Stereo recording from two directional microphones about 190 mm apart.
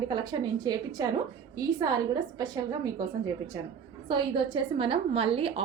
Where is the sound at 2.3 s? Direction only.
20° right (ahead or behind).